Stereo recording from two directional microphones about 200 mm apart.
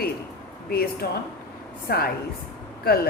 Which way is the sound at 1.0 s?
45° left (ahead or behind).